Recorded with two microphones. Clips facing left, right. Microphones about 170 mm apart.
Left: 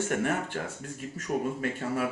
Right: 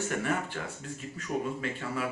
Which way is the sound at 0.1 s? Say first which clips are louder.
Left 3 dB; 55° left (ahead or behind).